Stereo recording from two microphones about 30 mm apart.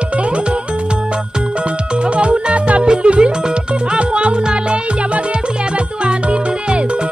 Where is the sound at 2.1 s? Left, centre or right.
Right.